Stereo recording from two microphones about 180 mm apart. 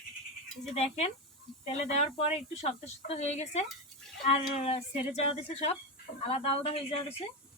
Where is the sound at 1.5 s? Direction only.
Centre (ahead or behind).